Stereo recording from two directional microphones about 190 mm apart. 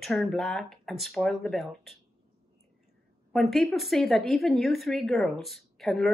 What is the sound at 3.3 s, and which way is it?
A woman's voice, centre (ahead or behind).